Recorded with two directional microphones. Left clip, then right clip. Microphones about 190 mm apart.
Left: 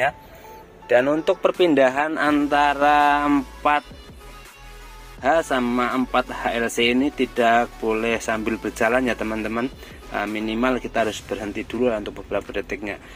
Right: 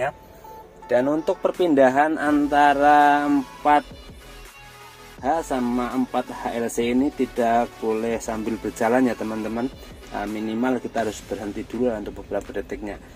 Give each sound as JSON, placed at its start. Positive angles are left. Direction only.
{"t": 0.8, "sound": "speech", "side_deg": -5}
{"t": 1.2, "sound": "speech", "side_deg": -15}
{"t": 1.5, "sound": "speech", "side_deg": -5}
{"t": 5.2, "sound": "speech", "side_deg": 0}